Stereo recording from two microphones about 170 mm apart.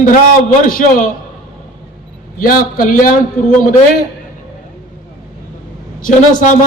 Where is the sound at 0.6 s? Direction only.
55° left (ahead or behind).